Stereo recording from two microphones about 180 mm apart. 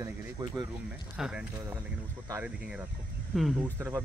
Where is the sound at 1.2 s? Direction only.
5° right (ahead or behind).